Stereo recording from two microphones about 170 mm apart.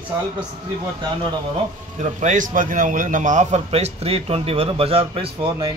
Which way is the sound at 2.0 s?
45° right (ahead or behind).